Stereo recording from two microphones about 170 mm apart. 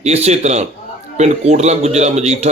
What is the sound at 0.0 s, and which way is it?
A man's voice, 40° right (ahead or behind).